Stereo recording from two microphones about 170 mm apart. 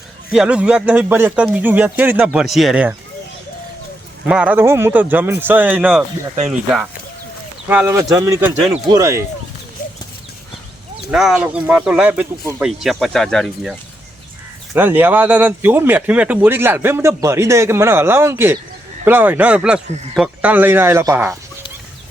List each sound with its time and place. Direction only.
0.3 s speech: 5° right (ahead or behind)
4.3 s speech: 5° right (ahead or behind)
7.7 s speech: 10° right (ahead or behind)
11.1 s speech: 5° right (ahead or behind)
14.7 s speech: 10° right (ahead or behind)